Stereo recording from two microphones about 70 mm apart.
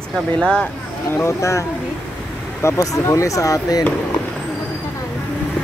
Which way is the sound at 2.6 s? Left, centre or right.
Left.